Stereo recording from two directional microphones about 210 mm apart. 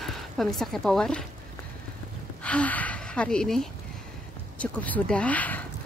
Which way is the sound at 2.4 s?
5° left (ahead or behind).